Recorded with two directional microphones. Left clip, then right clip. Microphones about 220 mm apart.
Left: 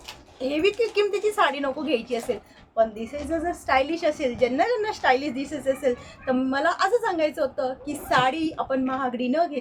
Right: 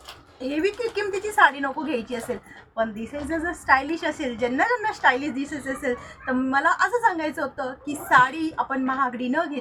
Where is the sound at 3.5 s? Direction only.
15° left (ahead or behind).